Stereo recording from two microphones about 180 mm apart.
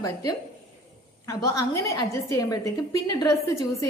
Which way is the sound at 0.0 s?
20° left (ahead or behind).